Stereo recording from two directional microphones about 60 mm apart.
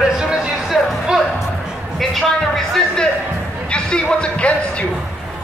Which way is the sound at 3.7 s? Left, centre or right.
Centre.